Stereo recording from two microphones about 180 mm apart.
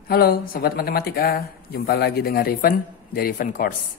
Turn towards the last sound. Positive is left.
turn(degrees=55)  # may be behind; listen again after turning